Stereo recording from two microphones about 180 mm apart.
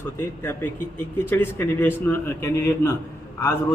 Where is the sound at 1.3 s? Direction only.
10° left (ahead or behind).